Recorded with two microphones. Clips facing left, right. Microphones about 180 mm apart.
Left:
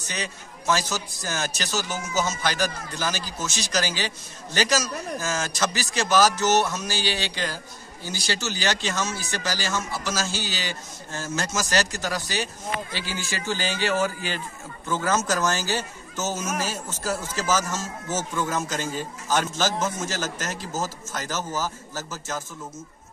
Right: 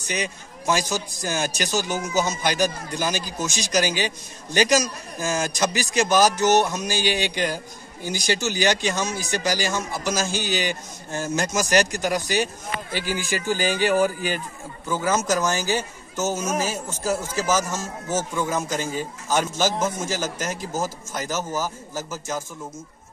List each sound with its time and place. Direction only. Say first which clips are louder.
0.0 s a man's voice: right 5 dB; 15° right (ahead or behind)